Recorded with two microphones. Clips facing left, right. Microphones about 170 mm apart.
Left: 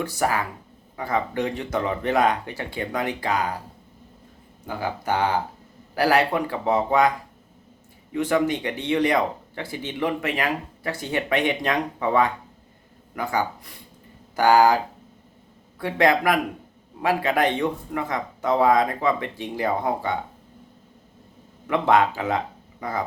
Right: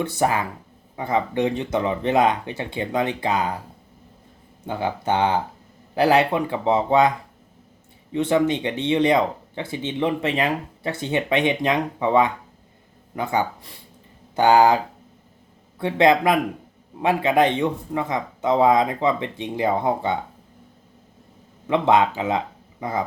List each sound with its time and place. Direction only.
0.0 s speech: 25° right (ahead or behind)
4.6 s speech: 25° right (ahead or behind)
8.1 s speech: 25° right (ahead or behind)
15.8 s speech: 25° right (ahead or behind)
21.7 s speech: 20° right (ahead or behind)